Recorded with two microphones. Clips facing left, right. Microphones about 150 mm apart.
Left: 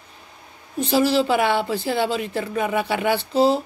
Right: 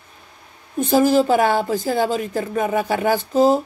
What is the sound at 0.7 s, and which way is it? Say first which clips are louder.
A woman's voice: right 3 dB; 45° right (ahead or behind).